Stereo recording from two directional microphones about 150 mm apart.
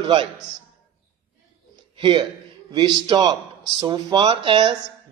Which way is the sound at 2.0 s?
35° right (ahead or behind).